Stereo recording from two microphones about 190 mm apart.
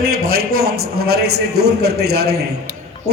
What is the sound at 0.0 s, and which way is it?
A man's voice, 50° right (ahead or behind).